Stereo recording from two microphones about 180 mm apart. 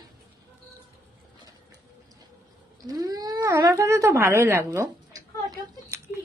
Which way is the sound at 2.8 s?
20° right (ahead or behind).